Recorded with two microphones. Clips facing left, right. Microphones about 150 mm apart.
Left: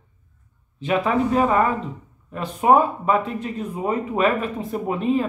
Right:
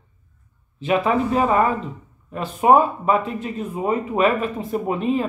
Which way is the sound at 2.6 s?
15° right (ahead or behind).